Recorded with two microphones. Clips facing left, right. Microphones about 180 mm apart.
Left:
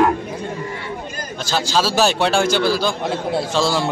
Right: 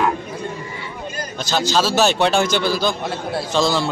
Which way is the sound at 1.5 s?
10° left (ahead or behind).